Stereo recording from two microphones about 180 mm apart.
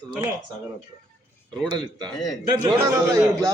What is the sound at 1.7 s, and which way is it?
A man's voice, 25° right (ahead or behind).